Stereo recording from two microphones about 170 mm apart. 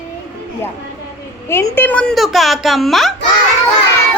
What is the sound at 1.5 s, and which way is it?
A woman's voice, 15° left (ahead or behind).